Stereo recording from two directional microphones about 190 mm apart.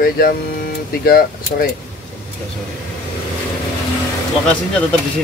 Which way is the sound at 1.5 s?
50° left (ahead or behind).